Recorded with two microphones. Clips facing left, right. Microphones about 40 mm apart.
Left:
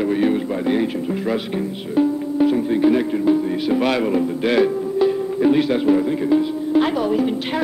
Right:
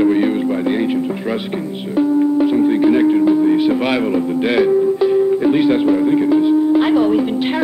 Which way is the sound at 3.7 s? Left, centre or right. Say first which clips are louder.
Right 2 dB; centre.